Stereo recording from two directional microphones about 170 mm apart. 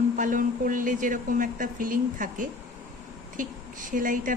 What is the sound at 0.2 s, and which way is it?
Speech, 50° right (ahead or behind).